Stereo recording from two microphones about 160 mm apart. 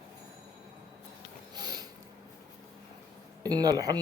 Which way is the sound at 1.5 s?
25° right (ahead or behind).